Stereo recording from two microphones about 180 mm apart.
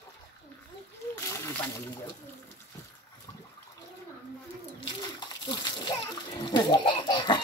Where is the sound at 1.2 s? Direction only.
15° left (ahead or behind).